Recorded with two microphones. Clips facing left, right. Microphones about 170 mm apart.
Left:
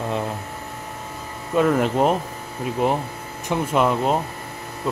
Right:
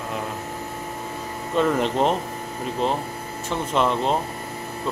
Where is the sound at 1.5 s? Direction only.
5° left (ahead or behind).